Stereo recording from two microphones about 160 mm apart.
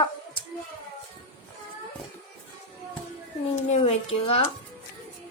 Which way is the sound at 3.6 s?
40° left (ahead or behind).